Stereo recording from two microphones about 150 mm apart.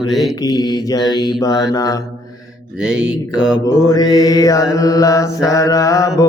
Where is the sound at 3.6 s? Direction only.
20° left (ahead or behind).